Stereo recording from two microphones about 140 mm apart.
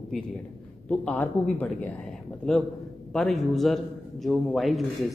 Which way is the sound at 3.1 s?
Centre (ahead or behind).